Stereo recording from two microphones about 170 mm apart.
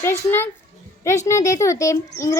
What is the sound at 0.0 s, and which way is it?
A child's voice, 15° left (ahead or behind).